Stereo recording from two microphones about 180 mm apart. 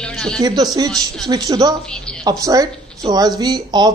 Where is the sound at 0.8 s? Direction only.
Centre (ahead or behind).